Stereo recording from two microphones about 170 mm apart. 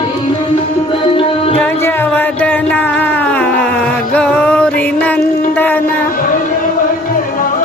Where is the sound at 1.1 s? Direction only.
35° left (ahead or behind).